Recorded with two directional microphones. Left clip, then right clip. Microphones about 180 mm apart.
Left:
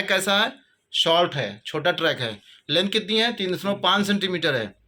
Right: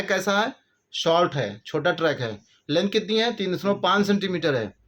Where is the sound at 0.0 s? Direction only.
40° right (ahead or behind).